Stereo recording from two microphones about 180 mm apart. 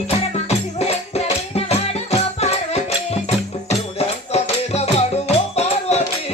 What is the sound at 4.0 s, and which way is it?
Music, 35° left (ahead or behind).